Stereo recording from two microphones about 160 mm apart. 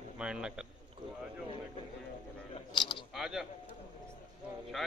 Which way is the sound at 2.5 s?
30° left (ahead or behind).